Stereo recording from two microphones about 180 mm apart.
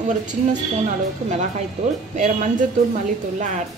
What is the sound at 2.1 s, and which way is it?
Speech, 40° right (ahead or behind).